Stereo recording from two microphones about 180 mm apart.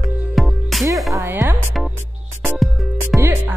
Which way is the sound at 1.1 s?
15° right (ahead or behind).